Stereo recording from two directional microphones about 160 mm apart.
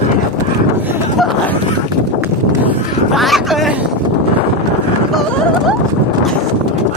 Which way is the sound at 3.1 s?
Centre (ahead or behind).